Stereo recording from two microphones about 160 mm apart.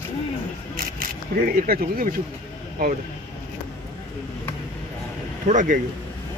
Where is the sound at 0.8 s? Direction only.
65° right (ahead or behind).